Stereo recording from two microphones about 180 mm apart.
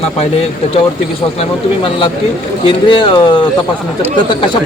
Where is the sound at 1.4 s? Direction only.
30° left (ahead or behind).